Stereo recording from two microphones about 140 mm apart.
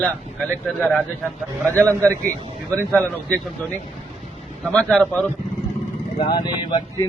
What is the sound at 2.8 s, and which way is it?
Speech, 15° right (ahead or behind).